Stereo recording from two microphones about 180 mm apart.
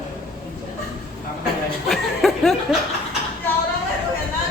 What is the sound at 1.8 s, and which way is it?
Snicker, centre (ahead or behind).